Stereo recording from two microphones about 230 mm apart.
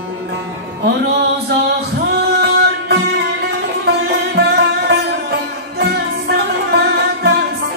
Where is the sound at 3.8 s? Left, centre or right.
Right.